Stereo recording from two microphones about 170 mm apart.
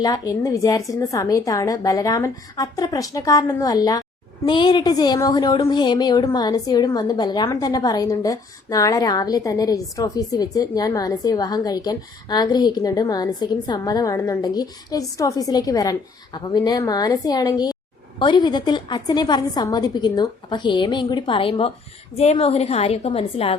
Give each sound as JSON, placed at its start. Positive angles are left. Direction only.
{"t": 0.0, "sound": "a woman's voice", "side_deg": 20}